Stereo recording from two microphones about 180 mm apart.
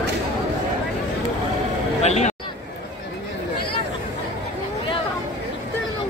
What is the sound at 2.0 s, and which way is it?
Speech, 35° left (ahead or behind).